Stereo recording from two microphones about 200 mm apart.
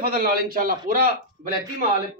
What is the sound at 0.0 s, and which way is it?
A man's voice, 45° right (ahead or behind).